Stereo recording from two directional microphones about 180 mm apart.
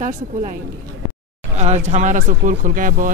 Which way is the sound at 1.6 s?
40° right (ahead or behind).